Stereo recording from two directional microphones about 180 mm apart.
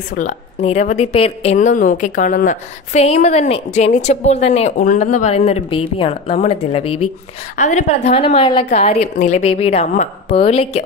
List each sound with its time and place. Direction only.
0.1 s a woman's voice: 45° left (ahead or behind)